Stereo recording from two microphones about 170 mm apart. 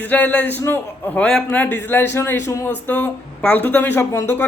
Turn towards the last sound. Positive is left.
turn(degrees=15)  # may be behind; listen again after turning